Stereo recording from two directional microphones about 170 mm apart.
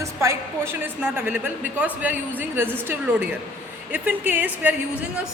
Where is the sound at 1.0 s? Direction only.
10° right (ahead or behind).